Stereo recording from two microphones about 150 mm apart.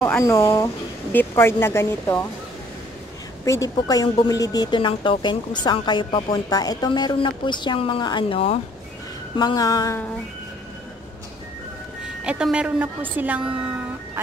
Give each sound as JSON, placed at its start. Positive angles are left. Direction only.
{"t": 0.0, "sound": "speech", "side_deg": 15}
{"t": 3.4, "sound": "music", "side_deg": 20}
{"t": 3.7, "sound": "speech", "side_deg": 25}
{"t": 9.4, "sound": "music", "side_deg": 25}
{"t": 12.2, "sound": "a woman's voice", "side_deg": -5}